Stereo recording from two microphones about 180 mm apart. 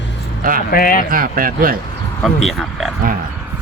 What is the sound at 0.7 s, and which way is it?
Speech, 55° left (ahead or behind).